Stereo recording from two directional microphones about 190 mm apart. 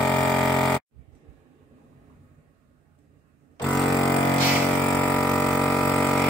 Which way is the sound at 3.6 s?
Centre (ahead or behind).